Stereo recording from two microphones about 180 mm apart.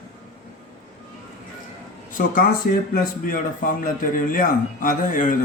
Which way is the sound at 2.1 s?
50° left (ahead or behind).